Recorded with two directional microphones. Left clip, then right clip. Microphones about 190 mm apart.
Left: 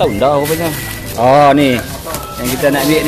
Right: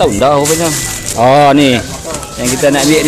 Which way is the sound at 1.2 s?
30° right (ahead or behind).